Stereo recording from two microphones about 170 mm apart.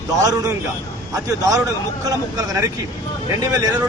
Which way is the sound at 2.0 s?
20° right (ahead or behind).